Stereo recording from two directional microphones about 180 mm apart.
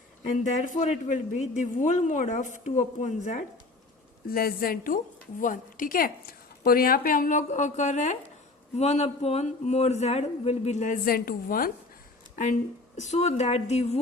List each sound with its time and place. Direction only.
0.3 s a woman's voice: 45° left (ahead or behind)
4.3 s a woman's voice: 55° left (ahead or behind)
13.0 s a man's voice: 40° left (ahead or behind)